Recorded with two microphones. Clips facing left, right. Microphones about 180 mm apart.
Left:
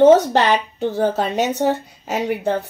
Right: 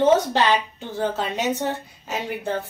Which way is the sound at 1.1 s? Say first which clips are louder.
Left 5 dB; 40° left (ahead or behind).